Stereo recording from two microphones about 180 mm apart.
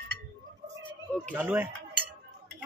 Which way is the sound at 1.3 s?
10° right (ahead or behind).